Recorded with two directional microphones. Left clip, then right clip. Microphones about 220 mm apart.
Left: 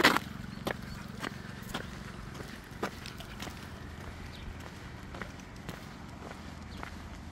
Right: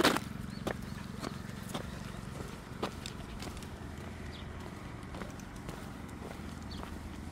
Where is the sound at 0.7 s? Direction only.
15° left (ahead or behind).